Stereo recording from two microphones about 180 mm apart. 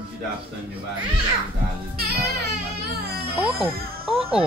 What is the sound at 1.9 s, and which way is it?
Music, 60° right (ahead or behind).